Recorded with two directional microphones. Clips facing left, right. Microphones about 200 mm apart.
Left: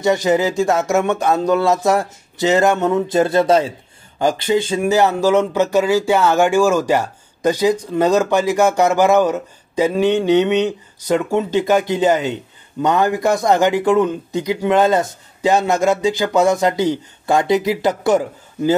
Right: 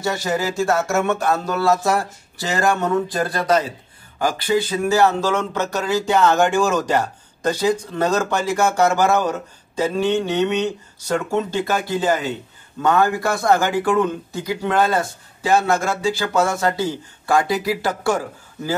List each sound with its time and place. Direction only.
0.0 s speech: 15° left (ahead or behind)